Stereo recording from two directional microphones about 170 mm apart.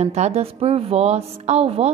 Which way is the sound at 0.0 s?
40° right (ahead or behind).